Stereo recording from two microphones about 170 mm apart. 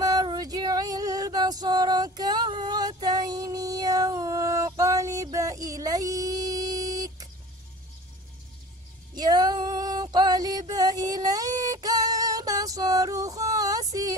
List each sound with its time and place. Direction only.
0.0 s female singing: 20° right (ahead or behind)
9.1 s female singing: 25° right (ahead or behind)